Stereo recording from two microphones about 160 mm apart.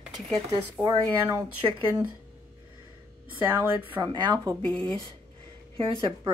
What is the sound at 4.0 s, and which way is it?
Speech, 25° right (ahead or behind).